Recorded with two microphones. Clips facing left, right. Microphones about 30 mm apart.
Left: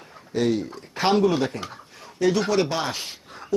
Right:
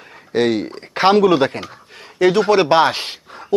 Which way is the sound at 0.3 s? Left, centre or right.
Right.